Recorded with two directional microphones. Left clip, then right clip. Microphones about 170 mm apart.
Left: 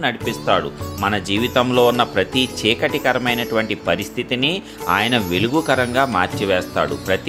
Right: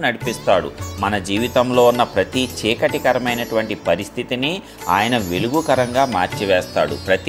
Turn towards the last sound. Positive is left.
turn(degrees=5)  # may be behind; listen again after turning